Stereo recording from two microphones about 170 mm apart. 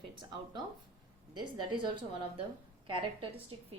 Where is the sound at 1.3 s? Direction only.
30° right (ahead or behind).